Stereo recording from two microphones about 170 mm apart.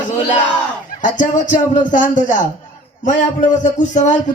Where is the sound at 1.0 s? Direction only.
50° left (ahead or behind).